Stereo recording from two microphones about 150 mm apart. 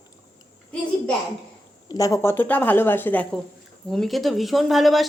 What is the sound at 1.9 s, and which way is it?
A woman's voice, 20° left (ahead or behind).